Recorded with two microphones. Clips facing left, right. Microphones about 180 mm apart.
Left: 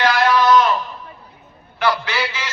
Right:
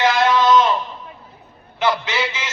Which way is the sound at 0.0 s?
20° right (ahead or behind).